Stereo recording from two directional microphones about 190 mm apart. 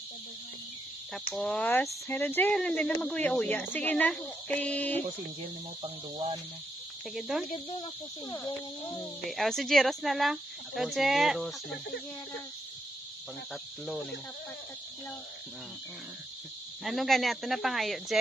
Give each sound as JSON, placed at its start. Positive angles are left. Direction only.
{"t": 1.3, "sound": "speech", "side_deg": 5}
{"t": 5.8, "sound": "speech", "side_deg": -25}
{"t": 7.2, "sound": "speech", "side_deg": 0}
{"t": 7.8, "sound": "speech", "side_deg": 20}
{"t": 9.3, "sound": "speech", "side_deg": 0}
{"t": 13.5, "sound": "speech", "side_deg": 0}
{"t": 16.8, "sound": "speech", "side_deg": 0}